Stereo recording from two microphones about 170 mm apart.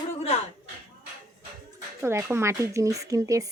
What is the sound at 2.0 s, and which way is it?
Speech, 15° right (ahead or behind).